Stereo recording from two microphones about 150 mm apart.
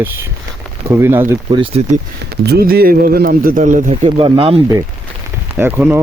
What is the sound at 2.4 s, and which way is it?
Speech, 90° right.